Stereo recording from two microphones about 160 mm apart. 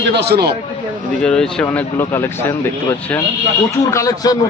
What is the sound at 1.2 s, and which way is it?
Speech, 5° left (ahead or behind).